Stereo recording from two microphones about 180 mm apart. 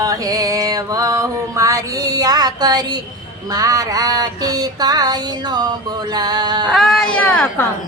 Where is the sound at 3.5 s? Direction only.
20° right (ahead or behind).